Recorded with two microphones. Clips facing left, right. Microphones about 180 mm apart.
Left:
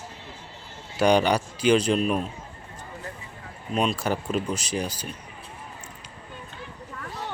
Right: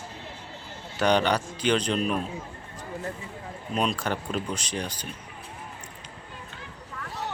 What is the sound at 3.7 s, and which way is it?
Speech, centre (ahead or behind).